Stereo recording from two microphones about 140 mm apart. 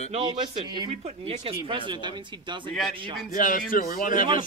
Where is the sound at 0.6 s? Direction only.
35° right (ahead or behind).